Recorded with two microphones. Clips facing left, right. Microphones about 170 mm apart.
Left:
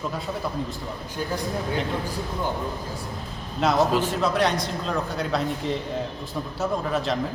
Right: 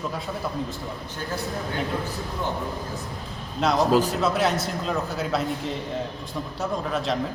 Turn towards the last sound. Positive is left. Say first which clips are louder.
# left 1 dB
turn(degrees=0)  # may be behind; listen again after turning